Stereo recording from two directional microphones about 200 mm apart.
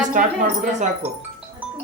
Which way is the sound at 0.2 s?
40° right (ahead or behind).